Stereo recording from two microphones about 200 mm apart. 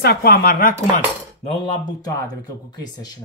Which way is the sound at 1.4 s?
25° left (ahead or behind).